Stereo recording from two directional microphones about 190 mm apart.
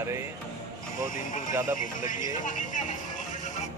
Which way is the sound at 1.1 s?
45° left (ahead or behind).